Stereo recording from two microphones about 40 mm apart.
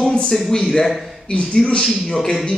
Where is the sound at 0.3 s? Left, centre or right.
Centre.